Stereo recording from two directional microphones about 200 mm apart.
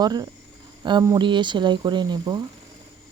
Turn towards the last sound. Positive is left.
turn(degrees=-20)  # may be behind; listen again after turning